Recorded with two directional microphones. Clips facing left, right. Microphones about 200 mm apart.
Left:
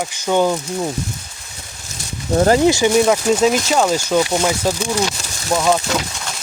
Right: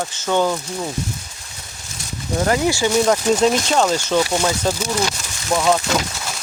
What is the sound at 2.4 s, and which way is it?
Speech, 35° left (ahead or behind).